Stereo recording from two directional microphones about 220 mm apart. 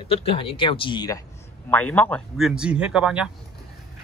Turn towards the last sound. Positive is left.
turn(degrees=-5)  # may be behind; listen again after turning